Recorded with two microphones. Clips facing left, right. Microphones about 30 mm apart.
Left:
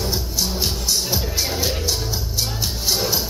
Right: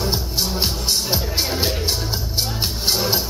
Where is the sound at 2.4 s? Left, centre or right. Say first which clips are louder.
Right 2 dB; right.